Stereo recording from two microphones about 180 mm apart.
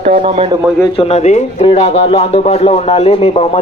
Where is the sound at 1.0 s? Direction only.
35° left (ahead or behind).